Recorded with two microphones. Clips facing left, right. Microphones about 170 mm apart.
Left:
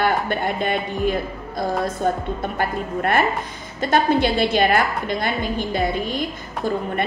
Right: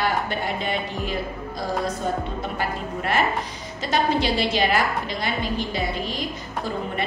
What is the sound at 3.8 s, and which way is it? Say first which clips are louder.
A woman's voice: left 4 dB; 55° left (ahead or behind).